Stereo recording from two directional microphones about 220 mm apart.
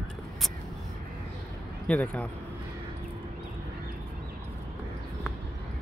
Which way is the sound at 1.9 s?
5° left (ahead or behind).